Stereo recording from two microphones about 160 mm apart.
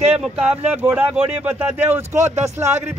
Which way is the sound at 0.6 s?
10° right (ahead or behind).